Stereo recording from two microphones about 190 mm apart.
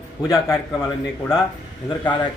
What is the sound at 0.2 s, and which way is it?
Speech, 20° left (ahead or behind).